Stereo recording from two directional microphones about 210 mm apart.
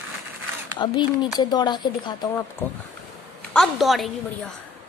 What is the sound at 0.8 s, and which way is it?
Speech, 20° left (ahead or behind).